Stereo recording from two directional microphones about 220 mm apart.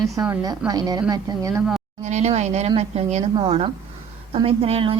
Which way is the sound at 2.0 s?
30° right (ahead or behind).